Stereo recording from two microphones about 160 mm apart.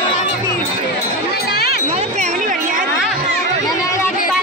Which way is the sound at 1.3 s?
80° left.